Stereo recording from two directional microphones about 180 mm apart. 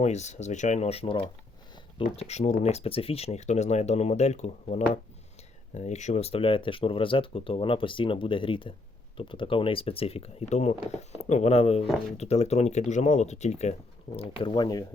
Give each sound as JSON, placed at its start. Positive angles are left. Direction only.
{"t": 0.0, "sound": "speech", "side_deg": 40}